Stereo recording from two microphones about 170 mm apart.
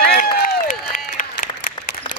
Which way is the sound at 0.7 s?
50° left (ahead or behind).